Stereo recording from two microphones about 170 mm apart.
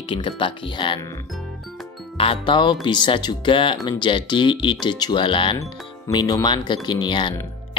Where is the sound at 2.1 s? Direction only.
30° left (ahead or behind).